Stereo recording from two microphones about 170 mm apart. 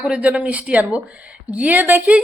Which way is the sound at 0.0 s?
10° right (ahead or behind).